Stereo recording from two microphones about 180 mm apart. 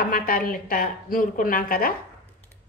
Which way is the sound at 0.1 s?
50° left (ahead or behind).